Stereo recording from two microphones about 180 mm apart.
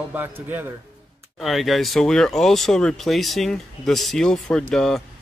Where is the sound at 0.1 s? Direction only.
10° right (ahead or behind).